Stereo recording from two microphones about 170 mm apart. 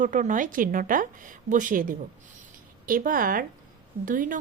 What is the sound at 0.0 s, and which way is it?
A woman's voice, 50° right (ahead or behind).